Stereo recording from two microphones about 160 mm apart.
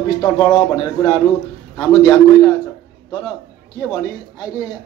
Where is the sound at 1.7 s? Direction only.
25° left (ahead or behind).